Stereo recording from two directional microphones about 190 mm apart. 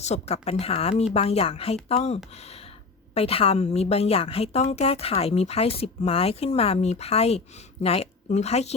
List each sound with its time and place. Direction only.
0.0 s a woman's voice: 35° left (ahead or behind)